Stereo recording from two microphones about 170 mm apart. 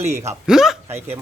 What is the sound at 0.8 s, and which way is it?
Speech, 15° right (ahead or behind).